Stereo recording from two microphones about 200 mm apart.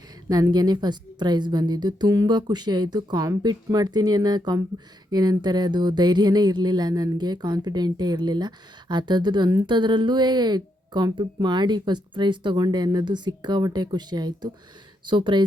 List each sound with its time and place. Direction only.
0.3 s speech: 20° right (ahead or behind)